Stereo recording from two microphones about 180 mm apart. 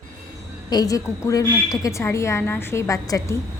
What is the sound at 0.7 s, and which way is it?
A woman's voice, 20° left (ahead or behind).